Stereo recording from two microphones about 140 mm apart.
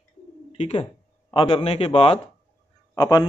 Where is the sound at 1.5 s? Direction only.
45° left (ahead or behind).